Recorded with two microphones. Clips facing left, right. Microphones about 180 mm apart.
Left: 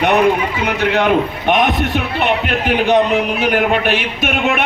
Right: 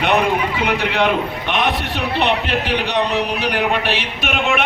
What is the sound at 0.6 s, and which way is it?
A man's voice, 45° left (ahead or behind).